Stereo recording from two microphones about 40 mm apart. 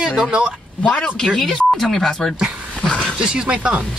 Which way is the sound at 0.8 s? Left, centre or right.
Left.